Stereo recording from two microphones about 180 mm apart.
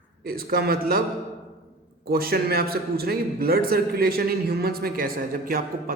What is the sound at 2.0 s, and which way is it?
A man's voice, 55° right (ahead or behind).